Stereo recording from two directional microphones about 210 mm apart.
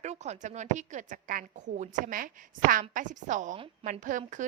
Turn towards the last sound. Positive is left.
turn(degrees=-40)  # may be behind; listen again after turning